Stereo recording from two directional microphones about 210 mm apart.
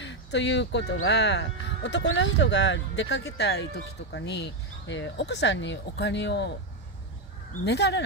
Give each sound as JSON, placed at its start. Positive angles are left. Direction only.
{"t": 0.0, "sound": "speech", "side_deg": 55}
{"t": 7.6, "sound": "speech", "side_deg": 55}